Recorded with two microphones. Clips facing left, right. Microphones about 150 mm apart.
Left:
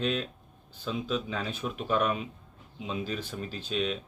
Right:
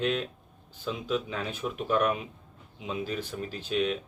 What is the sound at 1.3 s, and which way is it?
Speech, 15° right (ahead or behind).